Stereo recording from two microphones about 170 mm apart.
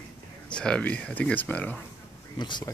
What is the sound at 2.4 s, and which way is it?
Speech, 25° left (ahead or behind).